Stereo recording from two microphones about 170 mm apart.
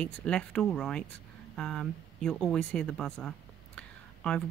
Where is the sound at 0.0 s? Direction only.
5° left (ahead or behind).